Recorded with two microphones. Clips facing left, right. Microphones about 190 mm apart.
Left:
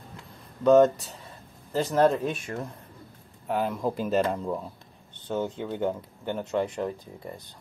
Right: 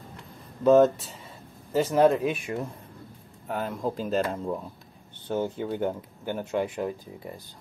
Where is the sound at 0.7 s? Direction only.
Centre (ahead or behind).